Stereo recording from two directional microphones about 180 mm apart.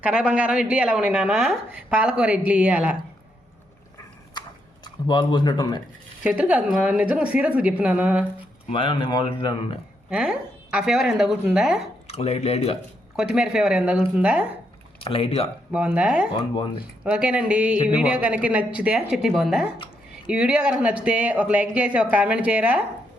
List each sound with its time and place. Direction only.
0.0 s a woman's voice: 5° right (ahead or behind)
4.4 s a sound: 25° left (ahead or behind)
6.2 s speech: 5° right (ahead or behind)
8.7 s speech: 30° left (ahead or behind)
10.1 s a woman's voice: 5° right (ahead or behind)
12.0 s speech: 35° left (ahead or behind)
13.1 s a woman's voice: 5° right (ahead or behind)
15.0 s speech: 30° left (ahead or behind)
16.0 s a woman's voice: 5° right (ahead or behind)
16.3 s speech: 25° left (ahead or behind)
17.0 s speech: 5° right (ahead or behind)